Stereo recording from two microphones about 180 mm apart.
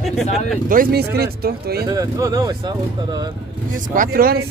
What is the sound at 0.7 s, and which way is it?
Speech, 55° right (ahead or behind).